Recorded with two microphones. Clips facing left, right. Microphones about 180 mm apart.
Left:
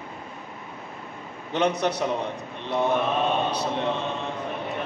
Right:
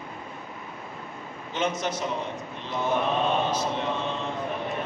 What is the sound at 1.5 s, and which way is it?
Speech, 65° left (ahead or behind).